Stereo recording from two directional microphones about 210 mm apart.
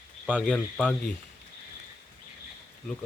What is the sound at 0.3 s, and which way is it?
Speech, 5° left (ahead or behind).